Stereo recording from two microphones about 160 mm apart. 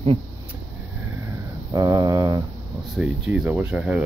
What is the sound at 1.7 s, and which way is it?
Speech, 20° right (ahead or behind).